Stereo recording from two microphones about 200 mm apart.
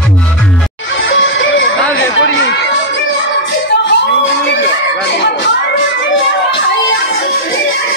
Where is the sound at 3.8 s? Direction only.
65° left (ahead or behind).